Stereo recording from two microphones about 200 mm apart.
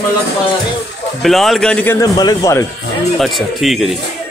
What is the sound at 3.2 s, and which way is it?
Speech, centre (ahead or behind).